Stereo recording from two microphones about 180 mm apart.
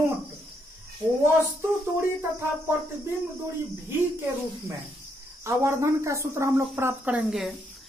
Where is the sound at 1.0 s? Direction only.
25° right (ahead or behind).